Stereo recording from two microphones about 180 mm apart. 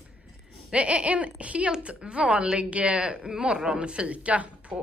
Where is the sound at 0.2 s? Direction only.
5° right (ahead or behind).